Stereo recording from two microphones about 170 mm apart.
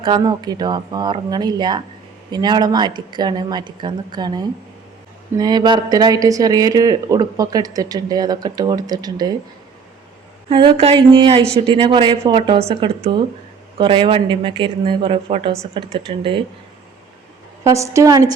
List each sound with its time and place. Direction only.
0.0 s speech: 25° right (ahead or behind)
10.5 s speech: 30° right (ahead or behind)
17.6 s speech: 20° right (ahead or behind)